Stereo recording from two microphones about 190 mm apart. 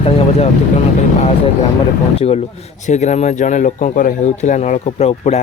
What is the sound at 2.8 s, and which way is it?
A man's voice, 40° left (ahead or behind).